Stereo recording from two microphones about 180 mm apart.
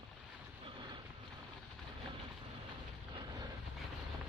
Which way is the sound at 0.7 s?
25° right (ahead or behind).